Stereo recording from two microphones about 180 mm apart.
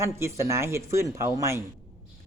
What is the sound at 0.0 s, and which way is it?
A man's voice, 15° right (ahead or behind).